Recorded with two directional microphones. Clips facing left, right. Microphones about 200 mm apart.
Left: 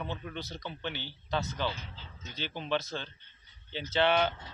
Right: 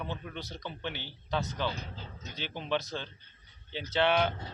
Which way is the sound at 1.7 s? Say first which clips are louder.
Right 4 dB; 40° right (ahead or behind).